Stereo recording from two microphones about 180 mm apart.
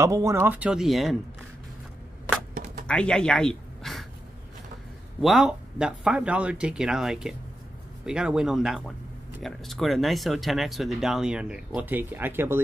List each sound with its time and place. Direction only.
0.0 s speech: 15° right (ahead or behind); by 1.1 s centre (ahead or behind)
2.5 s a sound: 50° right (ahead or behind)
2.9 s speech: 5° left (ahead or behind)
5.2 s speech: centre (ahead or behind)